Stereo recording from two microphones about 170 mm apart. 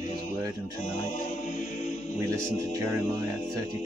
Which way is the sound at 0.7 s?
50° left (ahead or behind).